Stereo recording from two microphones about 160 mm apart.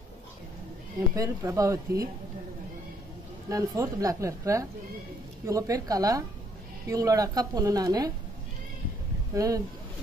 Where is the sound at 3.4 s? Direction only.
20° right (ahead or behind).